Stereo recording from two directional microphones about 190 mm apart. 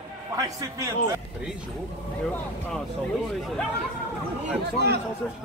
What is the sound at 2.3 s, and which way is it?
Speech, 5° left (ahead or behind).